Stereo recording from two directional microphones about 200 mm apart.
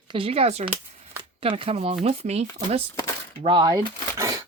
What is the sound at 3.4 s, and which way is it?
Speech, 25° right (ahead or behind).